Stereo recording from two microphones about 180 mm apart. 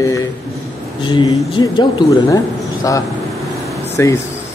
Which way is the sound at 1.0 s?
25° left (ahead or behind).